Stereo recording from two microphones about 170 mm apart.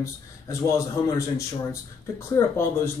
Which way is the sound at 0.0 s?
15° left (ahead or behind).